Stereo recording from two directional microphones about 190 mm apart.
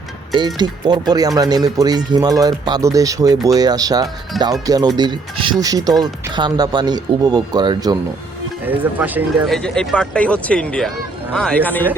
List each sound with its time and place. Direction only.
0.3 s speech: 20° right (ahead or behind)
8.6 s speech: 10° right (ahead or behind)
9.5 s speech: 5° left (ahead or behind)